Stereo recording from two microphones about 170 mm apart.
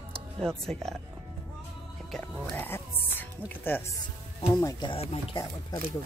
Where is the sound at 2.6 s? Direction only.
10° left (ahead or behind).